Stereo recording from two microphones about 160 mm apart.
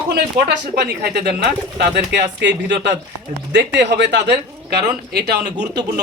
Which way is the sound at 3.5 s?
90° right.